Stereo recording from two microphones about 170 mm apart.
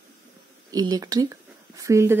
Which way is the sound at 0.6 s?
20° right (ahead or behind).